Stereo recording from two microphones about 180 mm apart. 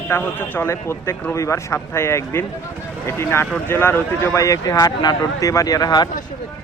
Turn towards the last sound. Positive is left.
turn(degrees=20)  # may be behind; listen again after turning